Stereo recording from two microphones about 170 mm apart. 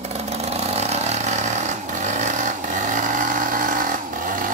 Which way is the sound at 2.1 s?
45° right (ahead or behind).